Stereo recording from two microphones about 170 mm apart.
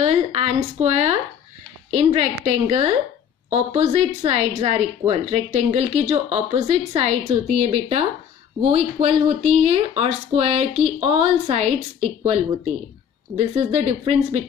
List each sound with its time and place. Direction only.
0.0 s speech: 35° right (ahead or behind)
13.4 s speech: 35° right (ahead or behind)